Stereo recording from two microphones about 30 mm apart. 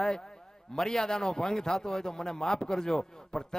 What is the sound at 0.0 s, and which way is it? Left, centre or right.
A man's voice, centre.